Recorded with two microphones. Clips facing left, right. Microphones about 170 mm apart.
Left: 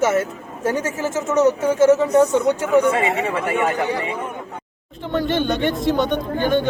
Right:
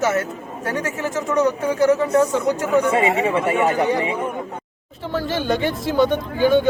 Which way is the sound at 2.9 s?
25° right (ahead or behind).